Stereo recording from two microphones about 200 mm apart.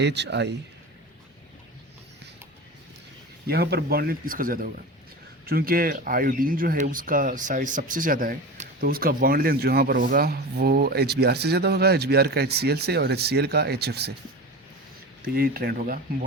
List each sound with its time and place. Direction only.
0.0 s speech: 60° right (ahead or behind)
3.4 s speech: 50° right (ahead or behind)
15.4 s speech: 50° right (ahead or behind)